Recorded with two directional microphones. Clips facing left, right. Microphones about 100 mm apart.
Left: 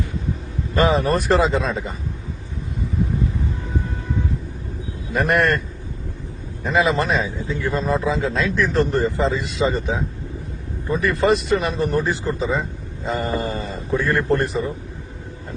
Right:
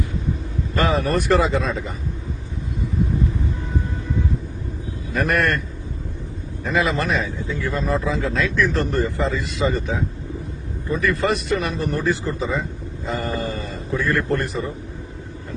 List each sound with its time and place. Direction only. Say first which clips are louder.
0.7 s a man's voice: left 2 dB; 30° left (ahead or behind)
5.1 s a man's voice: left 2 dB; 25° left (ahead or behind)
6.7 s a man's voice: left 2 dB; 25° left (ahead or behind)